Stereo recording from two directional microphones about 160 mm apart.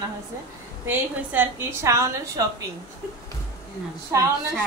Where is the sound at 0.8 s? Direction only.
10° right (ahead or behind).